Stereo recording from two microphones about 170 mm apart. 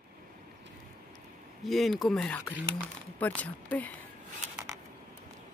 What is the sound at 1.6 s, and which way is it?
Speech, centre (ahead or behind).